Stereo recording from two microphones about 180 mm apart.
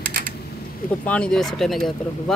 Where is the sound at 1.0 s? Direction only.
5° left (ahead or behind).